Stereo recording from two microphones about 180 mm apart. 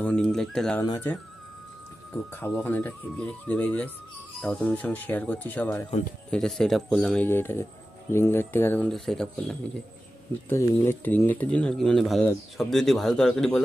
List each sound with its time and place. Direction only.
0.0 s speech: 5° left (ahead or behind)
0.8 s speech: 20° left (ahead or behind)
2.3 s speech: 10° left (ahead or behind)